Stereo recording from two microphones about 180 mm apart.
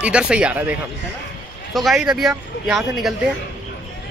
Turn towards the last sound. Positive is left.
turn(degrees=0)  # may be behind; listen again after turning